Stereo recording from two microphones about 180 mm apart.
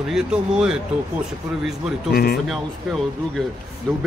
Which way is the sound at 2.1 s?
60° left (ahead or behind).